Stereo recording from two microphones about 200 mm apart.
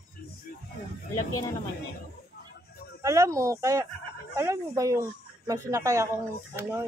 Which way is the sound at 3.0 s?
15° right (ahead or behind).